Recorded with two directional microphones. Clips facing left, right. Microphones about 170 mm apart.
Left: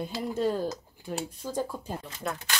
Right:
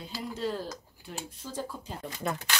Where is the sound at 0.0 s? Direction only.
50° left (ahead or behind).